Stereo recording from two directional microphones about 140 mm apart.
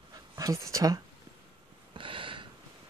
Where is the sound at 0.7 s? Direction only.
25° right (ahead or behind).